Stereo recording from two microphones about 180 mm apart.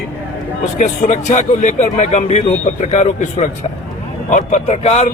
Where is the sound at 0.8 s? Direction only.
40° left (ahead or behind).